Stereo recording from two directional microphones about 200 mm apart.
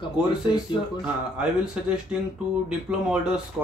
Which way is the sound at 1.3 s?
5° right (ahead or behind).